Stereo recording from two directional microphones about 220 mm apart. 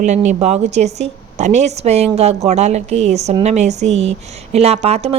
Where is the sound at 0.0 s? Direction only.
30° right (ahead or behind).